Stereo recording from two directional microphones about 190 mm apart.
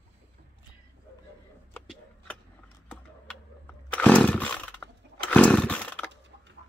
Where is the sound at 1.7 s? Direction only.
5° left (ahead or behind).